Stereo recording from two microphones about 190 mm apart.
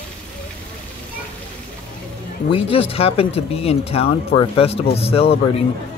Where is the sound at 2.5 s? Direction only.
30° left (ahead or behind).